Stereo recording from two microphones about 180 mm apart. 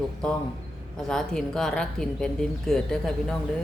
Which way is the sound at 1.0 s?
5° left (ahead or behind).